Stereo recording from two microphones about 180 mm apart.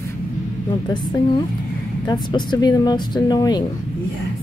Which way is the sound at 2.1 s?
25° left (ahead or behind).